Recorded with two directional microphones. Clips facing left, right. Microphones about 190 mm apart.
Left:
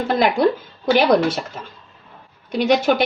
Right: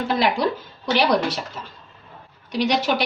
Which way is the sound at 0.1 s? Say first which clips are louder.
Left 4 dB; 50° left (ahead or behind).